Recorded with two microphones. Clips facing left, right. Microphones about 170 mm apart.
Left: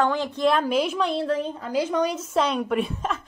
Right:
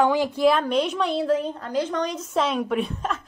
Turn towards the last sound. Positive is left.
turn(degrees=0)  # may be behind; listen again after turning